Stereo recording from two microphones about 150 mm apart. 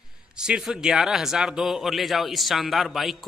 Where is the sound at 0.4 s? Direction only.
5° right (ahead or behind).